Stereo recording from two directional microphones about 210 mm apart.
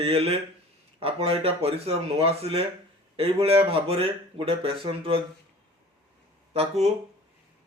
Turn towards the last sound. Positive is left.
turn(degrees=-30)  # may be behind; listen again after turning